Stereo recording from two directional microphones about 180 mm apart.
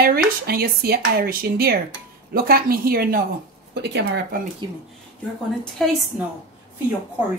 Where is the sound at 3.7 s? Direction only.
75° right (ahead or behind).